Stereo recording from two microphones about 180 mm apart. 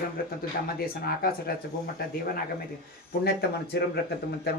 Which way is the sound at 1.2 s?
55° left (ahead or behind).